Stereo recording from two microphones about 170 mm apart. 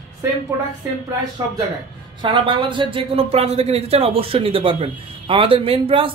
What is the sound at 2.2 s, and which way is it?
A man's voice, 30° right (ahead or behind).